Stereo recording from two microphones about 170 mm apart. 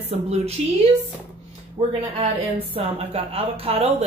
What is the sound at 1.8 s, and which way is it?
Speech, 30° right (ahead or behind).